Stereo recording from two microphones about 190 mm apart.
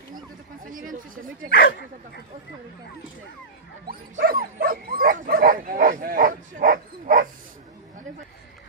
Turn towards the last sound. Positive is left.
turn(degrees=-45)  # may be behind; listen again after turning